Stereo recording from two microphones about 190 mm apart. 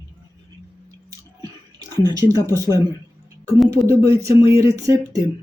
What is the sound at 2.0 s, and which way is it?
Speech, 20° right (ahead or behind).